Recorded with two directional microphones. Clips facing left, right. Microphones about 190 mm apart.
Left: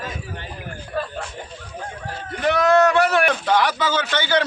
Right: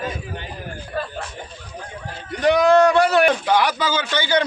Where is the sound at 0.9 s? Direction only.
5° right (ahead or behind).